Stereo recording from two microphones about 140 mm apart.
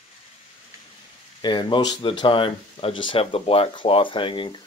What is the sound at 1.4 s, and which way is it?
Speech, 35° left (ahead or behind).